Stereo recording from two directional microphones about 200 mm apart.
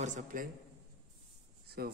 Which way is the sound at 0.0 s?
40° right (ahead or behind).